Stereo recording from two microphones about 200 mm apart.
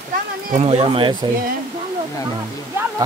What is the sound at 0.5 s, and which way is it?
Speech, 30° right (ahead or behind).